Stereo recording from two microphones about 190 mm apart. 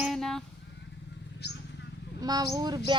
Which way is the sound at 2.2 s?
20° right (ahead or behind).